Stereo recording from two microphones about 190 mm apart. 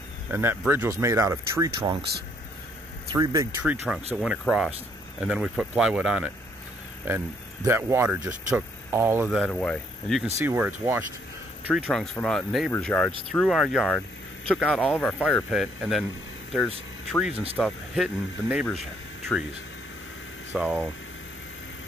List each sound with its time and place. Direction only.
0.3 s speech: 10° right (ahead or behind)
1.8 s speech: 25° right (ahead or behind)
3.1 s speech: 20° right (ahead or behind)
3.6 s speech: 5° right (ahead or behind)
9.5 s speech: 5° left (ahead or behind)
10.4 s speech: 10° right (ahead or behind)
17.1 s speech: 5° right (ahead or behind)
20.5 s speech: centre (ahead or behind)